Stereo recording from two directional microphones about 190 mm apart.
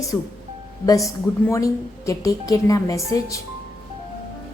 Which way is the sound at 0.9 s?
15° left (ahead or behind).